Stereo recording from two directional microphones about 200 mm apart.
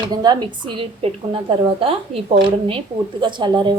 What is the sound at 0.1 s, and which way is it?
A woman's voice, 20° right (ahead or behind).